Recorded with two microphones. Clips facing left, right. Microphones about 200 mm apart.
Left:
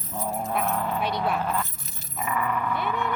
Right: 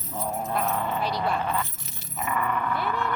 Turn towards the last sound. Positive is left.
turn(degrees=0)  # may be behind; listen again after turning